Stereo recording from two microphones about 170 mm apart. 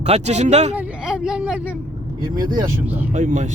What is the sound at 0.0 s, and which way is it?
Speech, 40° right (ahead or behind).